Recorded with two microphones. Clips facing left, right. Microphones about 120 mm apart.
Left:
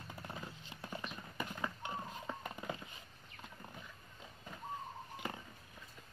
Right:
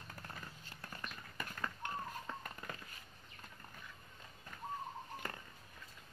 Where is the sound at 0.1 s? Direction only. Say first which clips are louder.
Left 4 dB; 15° left (ahead or behind).